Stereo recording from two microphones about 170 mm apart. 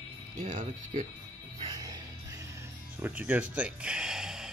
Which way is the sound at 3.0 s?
10° right (ahead or behind).